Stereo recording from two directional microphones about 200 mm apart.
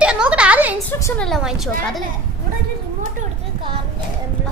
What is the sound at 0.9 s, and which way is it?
Speech, 10° left (ahead or behind).